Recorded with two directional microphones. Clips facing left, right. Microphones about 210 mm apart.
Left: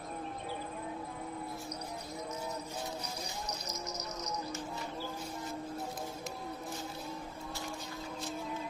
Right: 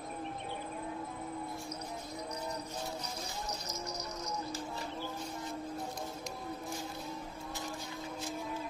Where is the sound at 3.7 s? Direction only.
20° left (ahead or behind).